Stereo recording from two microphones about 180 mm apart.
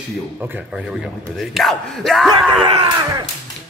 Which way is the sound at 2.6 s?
30° right (ahead or behind).